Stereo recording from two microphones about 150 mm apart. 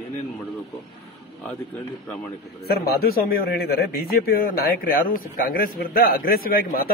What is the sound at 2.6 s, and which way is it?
A man's voice, 90° left.